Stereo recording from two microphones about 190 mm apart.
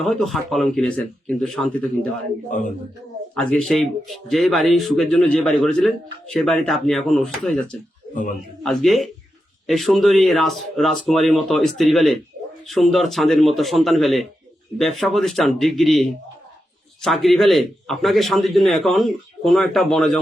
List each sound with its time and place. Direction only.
0.0 s speech: centre (ahead or behind)
2.5 s a man's voice: 45° left (ahead or behind)
3.3 s speech: 5° left (ahead or behind)
8.1 s a man's voice: 45° left (ahead or behind)
8.6 s speech: centre (ahead or behind)